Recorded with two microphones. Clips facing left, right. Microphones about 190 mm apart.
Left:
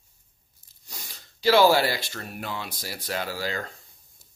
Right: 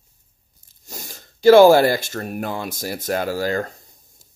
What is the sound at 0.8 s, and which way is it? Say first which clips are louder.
Speech: right 8 dB; 45° right (ahead or behind).